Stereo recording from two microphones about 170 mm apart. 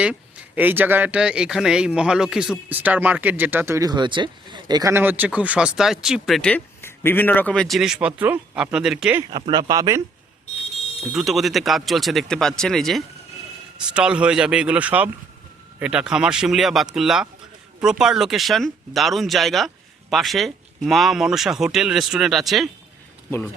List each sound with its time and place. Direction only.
0.0 s a man's voice: 5° right (ahead or behind)
9.3 s speech: 25° right (ahead or behind)
11.1 s a man's voice: centre (ahead or behind)